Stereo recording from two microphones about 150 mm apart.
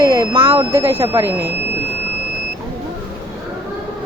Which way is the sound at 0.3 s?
40° right (ahead or behind).